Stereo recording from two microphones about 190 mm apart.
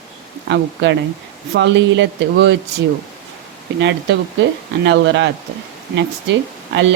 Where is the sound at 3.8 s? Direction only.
70° right (ahead or behind).